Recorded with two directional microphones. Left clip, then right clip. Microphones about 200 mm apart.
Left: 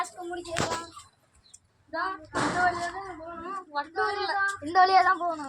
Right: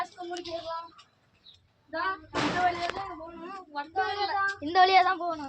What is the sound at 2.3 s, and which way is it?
Speech, 10° right (ahead or behind).